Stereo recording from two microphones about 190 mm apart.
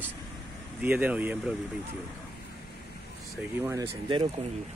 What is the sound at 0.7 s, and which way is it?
Speech, 10° right (ahead or behind).